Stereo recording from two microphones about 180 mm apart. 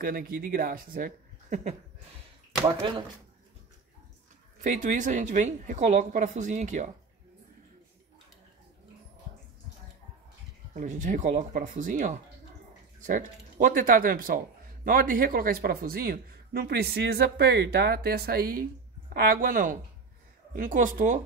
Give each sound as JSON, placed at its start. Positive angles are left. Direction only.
{"t": 0.0, "sound": "a woman's voice", "side_deg": -55}
{"t": 4.6, "sound": "a woman's voice", "side_deg": -45}
{"t": 10.7, "sound": "a woman's voice", "side_deg": -45}